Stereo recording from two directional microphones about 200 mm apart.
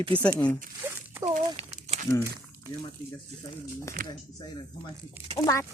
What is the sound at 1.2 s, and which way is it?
Crumpling, 30° right (ahead or behind).